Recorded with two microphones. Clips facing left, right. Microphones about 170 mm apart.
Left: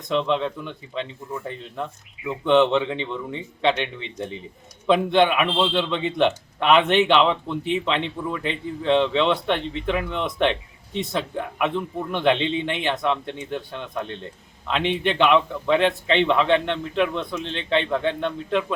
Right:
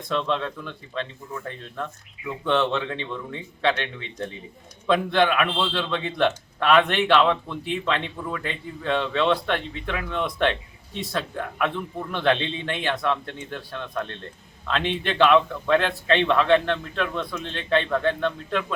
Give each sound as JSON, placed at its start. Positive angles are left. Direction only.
{"t": 0.1, "sound": "a man's voice", "side_deg": 15}